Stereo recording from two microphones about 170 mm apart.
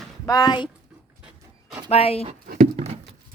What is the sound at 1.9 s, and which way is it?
Speech, 35° left (ahead or behind).